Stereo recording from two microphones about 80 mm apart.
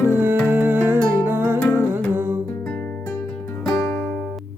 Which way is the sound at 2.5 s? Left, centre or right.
Centre.